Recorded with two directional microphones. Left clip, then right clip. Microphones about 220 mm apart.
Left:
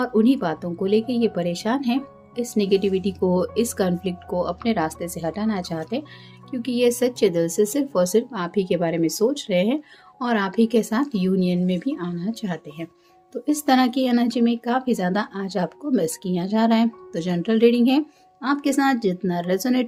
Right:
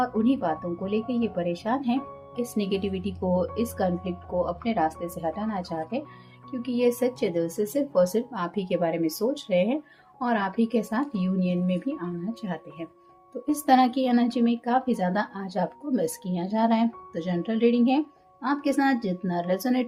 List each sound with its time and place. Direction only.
0.0 s speech: 40° left (ahead or behind)